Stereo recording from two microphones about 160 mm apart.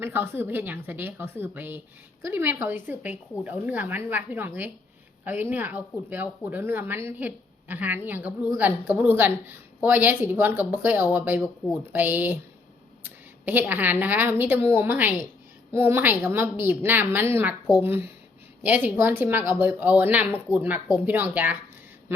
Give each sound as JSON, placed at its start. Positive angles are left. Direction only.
{"t": 0.0, "sound": "a woman's voice", "side_deg": -15}